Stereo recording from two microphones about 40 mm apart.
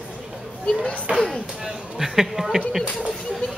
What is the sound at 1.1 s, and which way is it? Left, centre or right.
Speech, right.